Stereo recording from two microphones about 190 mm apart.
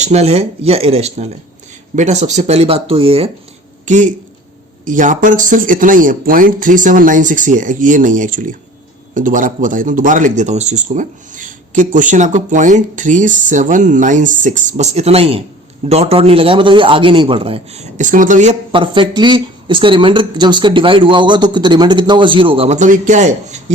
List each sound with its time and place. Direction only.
0.0 s speech: 35° right (ahead or behind)
3.8 s speech: 40° right (ahead or behind)
18.7 s speech: 25° right (ahead or behind)